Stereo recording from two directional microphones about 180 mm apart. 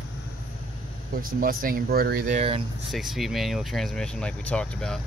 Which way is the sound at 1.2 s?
55° right (ahead or behind).